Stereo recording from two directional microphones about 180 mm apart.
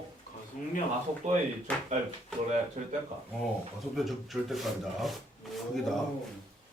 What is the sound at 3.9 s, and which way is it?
Speech, centre (ahead or behind).